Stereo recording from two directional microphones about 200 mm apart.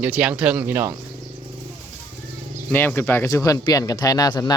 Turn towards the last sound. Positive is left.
turn(degrees=20)  # may be behind; listen again after turning